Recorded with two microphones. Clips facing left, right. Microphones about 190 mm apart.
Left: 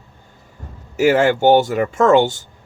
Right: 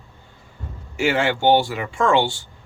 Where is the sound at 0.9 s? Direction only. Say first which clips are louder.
Left 6 dB; 40° left (ahead or behind).